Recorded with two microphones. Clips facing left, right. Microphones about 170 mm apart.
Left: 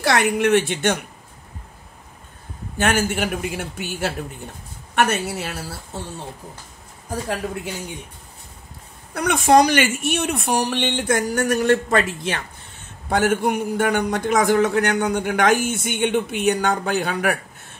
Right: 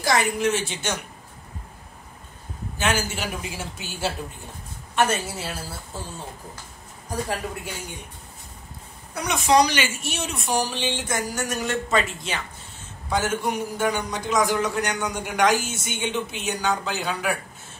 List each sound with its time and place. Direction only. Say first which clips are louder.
0.0 s a man's voice: left 3 dB; 65° left (ahead or behind)
2.8 s a man's voice: left 5 dB; 55° left (ahead or behind)
9.1 s a man's voice: left 5 dB; 55° left (ahead or behind)